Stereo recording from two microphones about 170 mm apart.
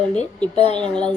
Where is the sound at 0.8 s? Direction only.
5° left (ahead or behind).